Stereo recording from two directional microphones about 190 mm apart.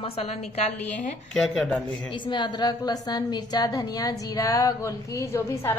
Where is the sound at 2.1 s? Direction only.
25° left (ahead or behind).